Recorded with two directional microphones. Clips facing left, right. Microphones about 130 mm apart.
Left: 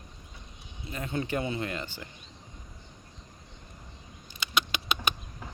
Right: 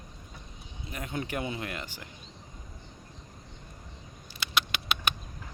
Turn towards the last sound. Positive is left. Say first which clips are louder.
# left 1 dB
turn(degrees=0)  # may be behind; listen again after turning